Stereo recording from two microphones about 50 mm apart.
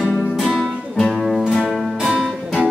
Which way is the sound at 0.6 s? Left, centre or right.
Centre.